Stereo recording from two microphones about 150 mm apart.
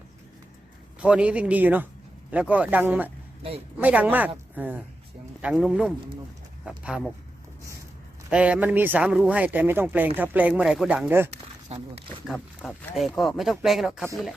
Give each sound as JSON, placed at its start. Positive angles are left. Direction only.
{"t": 0.9, "sound": "speech", "side_deg": -5}
{"t": 8.3, "sound": "speech", "side_deg": -10}
{"t": 11.7, "sound": "speech", "side_deg": -45}
{"t": 12.9, "sound": "speech", "side_deg": 0}